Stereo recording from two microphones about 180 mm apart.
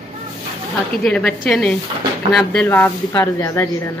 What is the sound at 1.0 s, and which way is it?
A woman's voice, 5° left (ahead or behind).